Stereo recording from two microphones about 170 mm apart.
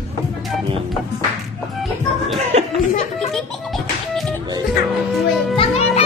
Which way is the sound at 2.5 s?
40° right (ahead or behind).